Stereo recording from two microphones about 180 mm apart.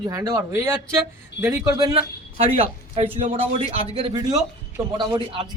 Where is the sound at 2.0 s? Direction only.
35° right (ahead or behind).